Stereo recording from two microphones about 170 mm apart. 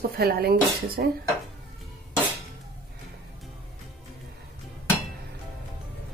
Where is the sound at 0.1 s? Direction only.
65° right (ahead or behind).